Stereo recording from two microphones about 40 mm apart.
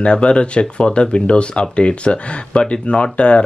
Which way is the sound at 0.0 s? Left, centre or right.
Left.